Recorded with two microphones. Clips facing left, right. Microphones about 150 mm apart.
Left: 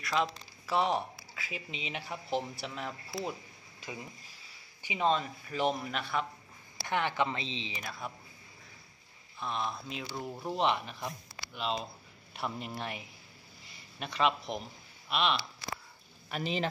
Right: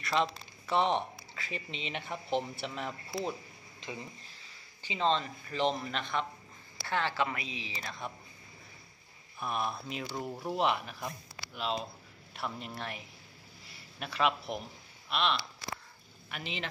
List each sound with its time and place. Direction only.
0.0 s speech: centre (ahead or behind)
6.9 s speech: 15° left (ahead or behind)
7.8 s speech: 5° left (ahead or behind)
9.4 s speech: 10° right (ahead or behind)
16.3 s speech: 40° left (ahead or behind)